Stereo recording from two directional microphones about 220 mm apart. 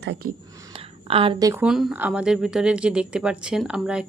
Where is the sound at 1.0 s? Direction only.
25° right (ahead or behind).